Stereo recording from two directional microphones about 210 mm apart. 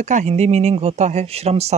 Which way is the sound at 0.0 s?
35° right (ahead or behind).